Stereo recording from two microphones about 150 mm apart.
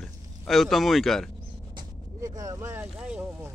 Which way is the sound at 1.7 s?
25° right (ahead or behind).